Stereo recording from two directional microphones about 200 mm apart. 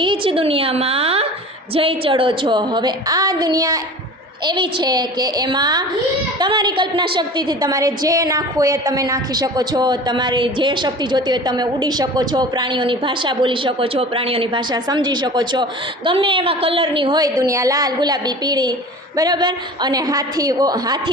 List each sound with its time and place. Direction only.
0.0 s a woman's voice: 25° right (ahead or behind)